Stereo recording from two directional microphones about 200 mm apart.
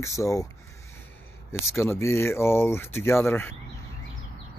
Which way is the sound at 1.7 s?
10° left (ahead or behind).